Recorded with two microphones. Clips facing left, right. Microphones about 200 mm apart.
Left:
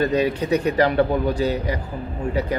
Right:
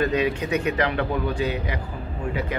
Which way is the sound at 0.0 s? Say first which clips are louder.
Left 3 dB; 35° left (ahead or behind).